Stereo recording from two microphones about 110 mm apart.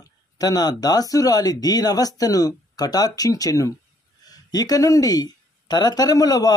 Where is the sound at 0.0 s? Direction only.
35° left (ahead or behind).